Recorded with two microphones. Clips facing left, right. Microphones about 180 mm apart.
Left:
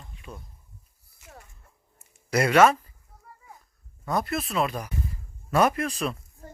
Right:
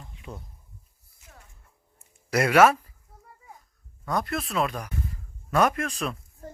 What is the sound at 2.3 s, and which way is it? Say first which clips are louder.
Speech: even; 5° right (ahead or behind).